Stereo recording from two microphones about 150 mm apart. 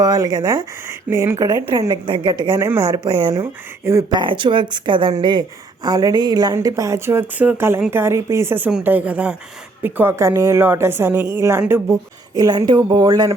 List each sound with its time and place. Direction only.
0.0 s a woman's voice: 25° right (ahead or behind)
2.6 s a woman's voice: 15° right (ahead or behind)
3.0 s speech: 35° right (ahead or behind)
3.3 s a woman's voice: 20° right (ahead or behind)
4.1 s a woman's voice: 35° right (ahead or behind); by 11.9 s 15° right (ahead or behind)
12.3 s a woman's voice: 25° right (ahead or behind)